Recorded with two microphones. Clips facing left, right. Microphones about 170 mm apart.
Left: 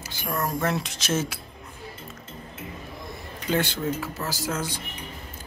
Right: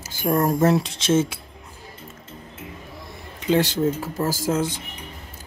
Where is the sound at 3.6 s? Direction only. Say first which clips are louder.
Right 4 dB; 40° right (ahead or behind).